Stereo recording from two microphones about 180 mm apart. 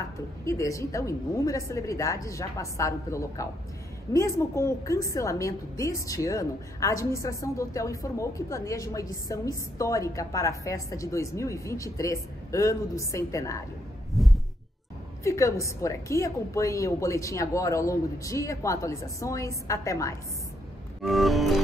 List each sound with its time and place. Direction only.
0.5 s a woman's voice: 15° left (ahead or behind)
14.1 s heart sounds: centre (ahead or behind)
15.2 s a woman's voice: 15° left (ahead or behind)
21.0 s music: centre (ahead or behind)